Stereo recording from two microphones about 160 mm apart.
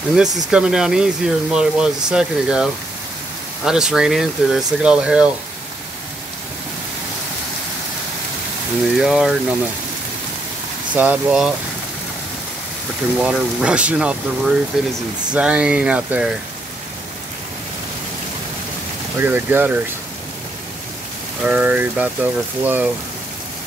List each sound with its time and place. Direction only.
0.5 s speech: 5° right (ahead or behind)
8.9 s speech: centre (ahead or behind)
11.0 s speech: 10° right (ahead or behind)
13.2 s speech: 5° right (ahead or behind)
19.1 s speech: 15° right (ahead or behind)
21.5 s speech: 10° right (ahead or behind)